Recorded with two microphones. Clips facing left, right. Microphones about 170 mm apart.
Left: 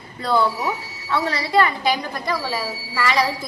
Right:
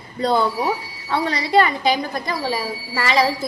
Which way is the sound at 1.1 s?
25° right (ahead or behind).